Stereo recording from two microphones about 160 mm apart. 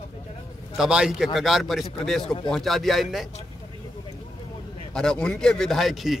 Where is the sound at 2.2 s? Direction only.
30° left (ahead or behind).